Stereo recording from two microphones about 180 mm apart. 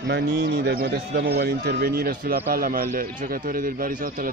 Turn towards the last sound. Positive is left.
turn(degrees=-50)  # may be behind; listen again after turning